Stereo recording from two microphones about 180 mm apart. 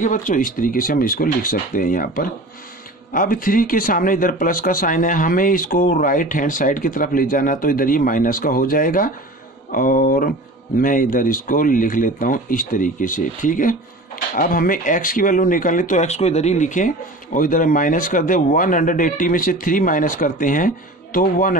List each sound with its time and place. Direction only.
0.0 s speech: 45° left (ahead or behind)